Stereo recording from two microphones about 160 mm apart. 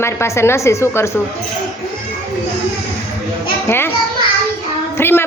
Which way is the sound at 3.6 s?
15° left (ahead or behind).